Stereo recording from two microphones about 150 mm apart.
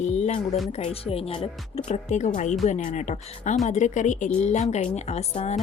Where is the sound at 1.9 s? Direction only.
55° left (ahead or behind).